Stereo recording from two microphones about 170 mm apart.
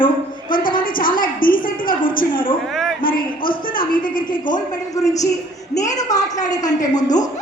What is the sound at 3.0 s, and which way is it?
A woman's voice, 55° left (ahead or behind).